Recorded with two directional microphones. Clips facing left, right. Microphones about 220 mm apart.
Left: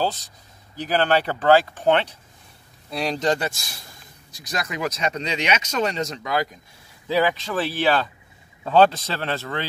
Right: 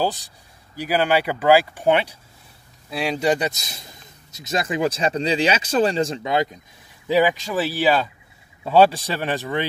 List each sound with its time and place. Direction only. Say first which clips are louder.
0.0 s a man's voice: right 2 dB; 15° right (ahead or behind)